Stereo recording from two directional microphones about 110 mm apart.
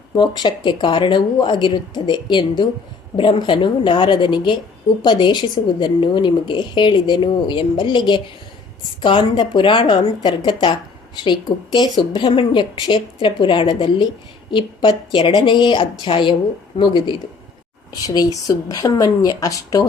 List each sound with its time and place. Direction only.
0.2 s speech: 45° left (ahead or behind)
18.0 s speech: 35° left (ahead or behind)